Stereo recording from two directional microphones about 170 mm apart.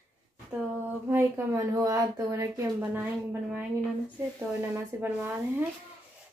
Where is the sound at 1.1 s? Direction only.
15° right (ahead or behind).